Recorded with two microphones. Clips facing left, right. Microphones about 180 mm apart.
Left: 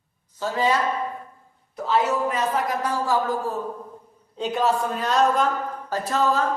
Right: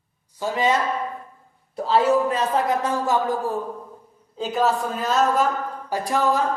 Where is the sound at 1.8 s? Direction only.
30° right (ahead or behind).